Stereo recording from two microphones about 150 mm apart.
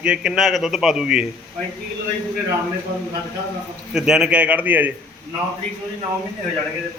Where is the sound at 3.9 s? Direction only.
5° right (ahead or behind).